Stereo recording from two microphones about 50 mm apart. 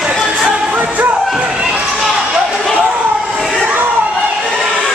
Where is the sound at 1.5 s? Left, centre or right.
Centre.